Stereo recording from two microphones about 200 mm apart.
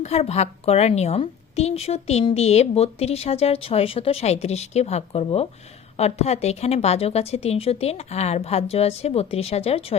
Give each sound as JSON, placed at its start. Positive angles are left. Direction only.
{"t": 0.0, "sound": "a woman's voice", "side_deg": 30}